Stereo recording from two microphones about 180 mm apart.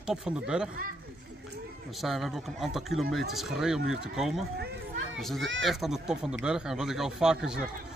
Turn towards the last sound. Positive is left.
turn(degrees=-5)  # may be behind; listen again after turning